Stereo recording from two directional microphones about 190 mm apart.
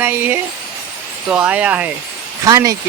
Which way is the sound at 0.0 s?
10° right (ahead or behind).